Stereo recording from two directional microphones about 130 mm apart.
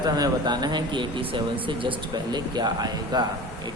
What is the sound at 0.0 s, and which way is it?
Speech, 30° right (ahead or behind).